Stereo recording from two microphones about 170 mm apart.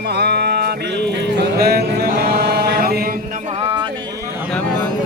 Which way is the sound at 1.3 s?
75° right (ahead or behind).